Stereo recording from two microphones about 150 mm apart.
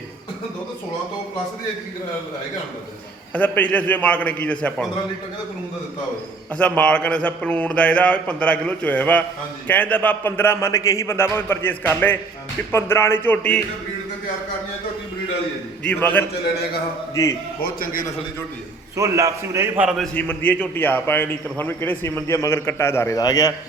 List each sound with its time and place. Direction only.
3.3 s a man's voice: 10° left (ahead or behind)
6.5 s a man's voice: 10° left (ahead or behind)
15.9 s a man's voice: 10° left (ahead or behind)
17.6 s a man's voice: 80° left
18.9 s a man's voice: 20° right (ahead or behind)
20.0 s a man's voice: 10° left (ahead or behind)